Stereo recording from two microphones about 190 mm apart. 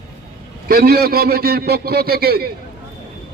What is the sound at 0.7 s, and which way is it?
A man's voice, 50° right (ahead or behind).